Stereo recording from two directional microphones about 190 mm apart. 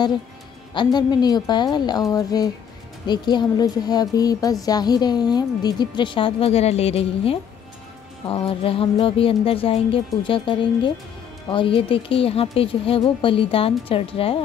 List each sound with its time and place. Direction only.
0.7 s a woman's voice: 20° left (ahead or behind)